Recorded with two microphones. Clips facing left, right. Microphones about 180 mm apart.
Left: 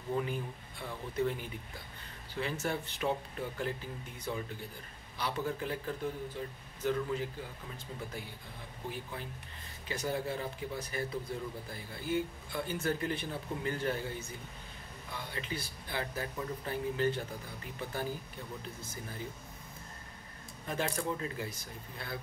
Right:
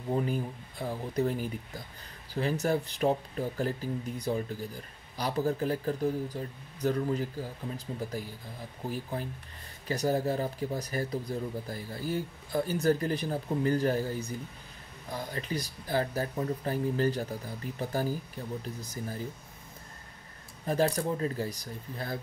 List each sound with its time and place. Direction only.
0.1 s speech: 40° right (ahead or behind)
18.8 s speech: 35° right (ahead or behind)
20.6 s speech: 35° right (ahead or behind)